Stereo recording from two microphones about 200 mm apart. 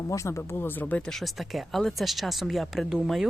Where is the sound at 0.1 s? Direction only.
15° left (ahead or behind).